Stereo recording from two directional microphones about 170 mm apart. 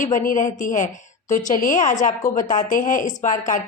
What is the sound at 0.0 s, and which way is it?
A woman's voice, 50° left (ahead or behind).